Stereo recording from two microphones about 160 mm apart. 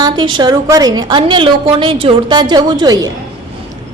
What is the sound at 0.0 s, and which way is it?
A woman's voice, 30° right (ahead or behind).